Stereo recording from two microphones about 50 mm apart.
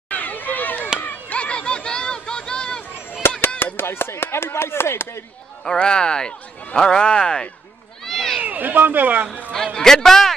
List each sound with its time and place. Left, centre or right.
0.1 s a sound: left; by 2.8 s centre
3.2 s chop: left
3.7 s speech: left
5.8 s speech: centre
8.0 s a sound: centre
8.4 s speech: right
9.8 s speech: centre